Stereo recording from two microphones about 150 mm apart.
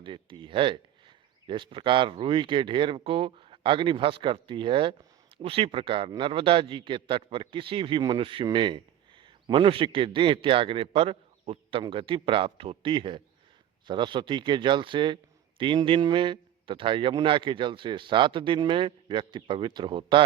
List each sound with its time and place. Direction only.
0.0 s a man's voice: 35° right (ahead or behind)